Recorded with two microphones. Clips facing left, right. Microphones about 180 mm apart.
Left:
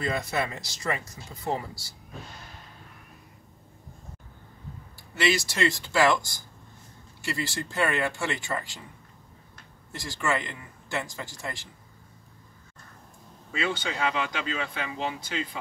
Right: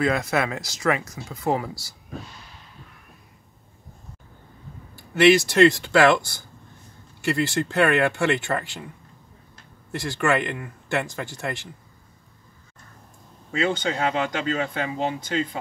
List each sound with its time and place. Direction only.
0.0 s speech: 90° right
4.9 s speech: 60° right (ahead or behind)
9.9 s speech: 65° right (ahead or behind)
13.6 s speech: 45° right (ahead or behind)